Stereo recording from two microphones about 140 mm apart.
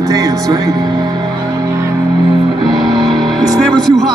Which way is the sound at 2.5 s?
30° right (ahead or behind).